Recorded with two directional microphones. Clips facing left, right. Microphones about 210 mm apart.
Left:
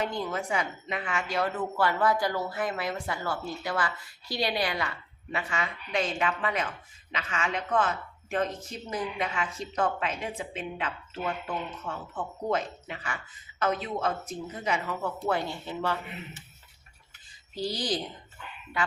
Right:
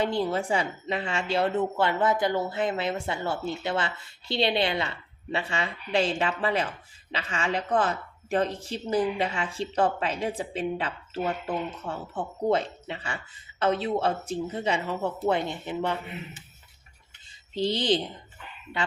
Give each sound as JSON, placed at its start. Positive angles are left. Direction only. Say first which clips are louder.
{"t": 0.0, "sound": "speech", "louder": "right 5 dB", "side_deg": -30}
{"t": 17.5, "sound": "speech", "louder": "right 6 dB", "side_deg": -25}